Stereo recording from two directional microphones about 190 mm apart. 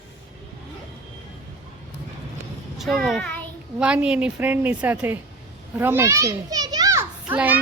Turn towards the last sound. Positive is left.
turn(degrees=-10)  # may be behind; listen again after turning